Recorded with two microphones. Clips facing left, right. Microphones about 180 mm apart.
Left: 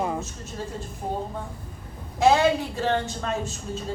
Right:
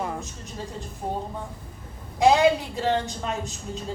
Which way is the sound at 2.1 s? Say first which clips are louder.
Right 1 dB; 15° right (ahead or behind).